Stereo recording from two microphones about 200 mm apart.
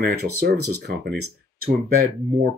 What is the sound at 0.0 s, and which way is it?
Speech, 50° right (ahead or behind).